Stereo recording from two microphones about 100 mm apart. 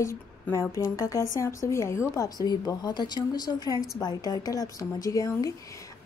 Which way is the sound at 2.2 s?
45° left (ahead or behind).